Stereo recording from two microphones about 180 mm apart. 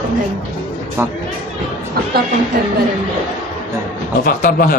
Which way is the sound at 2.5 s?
55° right (ahead or behind).